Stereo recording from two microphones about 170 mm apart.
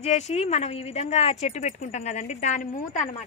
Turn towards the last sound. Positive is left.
turn(degrees=50)  # may be behind; listen again after turning